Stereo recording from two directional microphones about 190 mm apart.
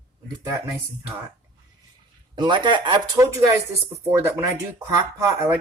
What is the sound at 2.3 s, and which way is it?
Speech, 25° right (ahead or behind).